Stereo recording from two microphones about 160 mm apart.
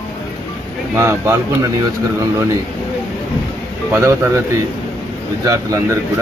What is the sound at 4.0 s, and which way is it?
Speech, 20° right (ahead or behind).